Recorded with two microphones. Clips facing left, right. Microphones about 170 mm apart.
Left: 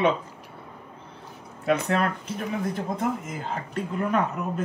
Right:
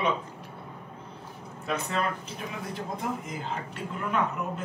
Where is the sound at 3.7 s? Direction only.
40° left (ahead or behind).